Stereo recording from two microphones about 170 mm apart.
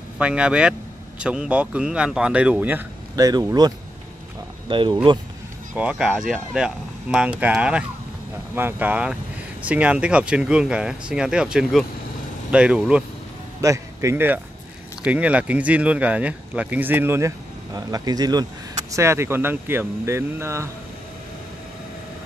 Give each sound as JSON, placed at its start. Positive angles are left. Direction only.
{"t": 0.2, "sound": "speech", "side_deg": -5}
{"t": 3.3, "sound": "speech", "side_deg": -25}
{"t": 5.8, "sound": "speech", "side_deg": -5}
{"t": 13.6, "sound": "speech", "side_deg": -20}